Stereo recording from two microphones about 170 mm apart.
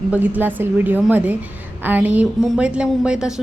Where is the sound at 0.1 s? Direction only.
10° right (ahead or behind).